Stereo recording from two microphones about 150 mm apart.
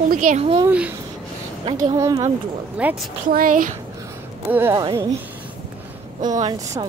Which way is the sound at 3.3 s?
70° right (ahead or behind).